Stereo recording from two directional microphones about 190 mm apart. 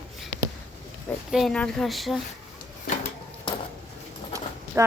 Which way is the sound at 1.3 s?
Centre (ahead or behind).